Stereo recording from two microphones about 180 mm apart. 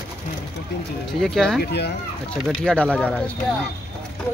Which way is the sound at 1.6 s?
65° left (ahead or behind).